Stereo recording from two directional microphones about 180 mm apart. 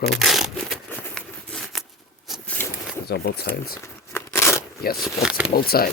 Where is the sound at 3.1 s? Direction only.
65° left (ahead or behind).